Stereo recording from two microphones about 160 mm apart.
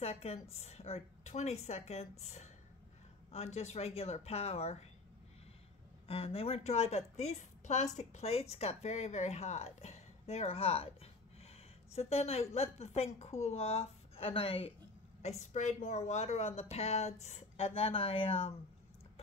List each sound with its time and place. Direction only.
0.0 s a woman's voice: 40° left (ahead or behind)
6.0 s a woman's voice: 35° left (ahead or behind)